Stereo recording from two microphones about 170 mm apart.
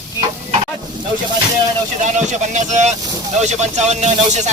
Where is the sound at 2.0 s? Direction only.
45° right (ahead or behind).